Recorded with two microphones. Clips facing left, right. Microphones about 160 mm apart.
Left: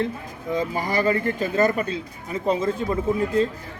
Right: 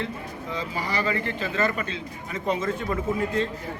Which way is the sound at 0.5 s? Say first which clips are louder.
Left 6 dB; 45° left (ahead or behind).